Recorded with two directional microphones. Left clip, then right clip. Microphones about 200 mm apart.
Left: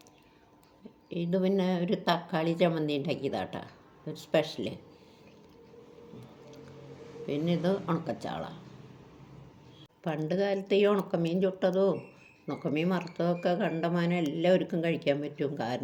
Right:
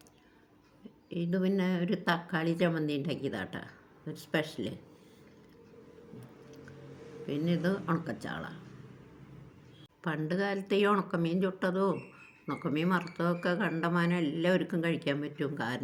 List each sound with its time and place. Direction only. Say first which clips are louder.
1.1 s a woman's voice: left 4 dB; 20° right (ahead or behind)
7.3 s a woman's voice: left 3 dB; 20° right (ahead or behind)
10.0 s speech: left 3 dB; 15° right (ahead or behind)